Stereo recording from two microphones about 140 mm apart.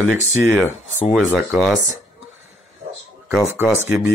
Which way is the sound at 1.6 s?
Centre (ahead or behind).